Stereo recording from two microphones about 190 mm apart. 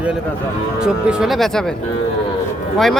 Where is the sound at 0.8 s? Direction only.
5° right (ahead or behind).